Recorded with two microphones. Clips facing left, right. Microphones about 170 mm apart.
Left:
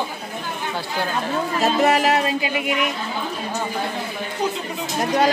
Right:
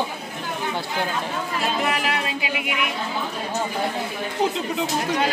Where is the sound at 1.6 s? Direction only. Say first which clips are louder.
Left 8 dB; 40° left (ahead or behind).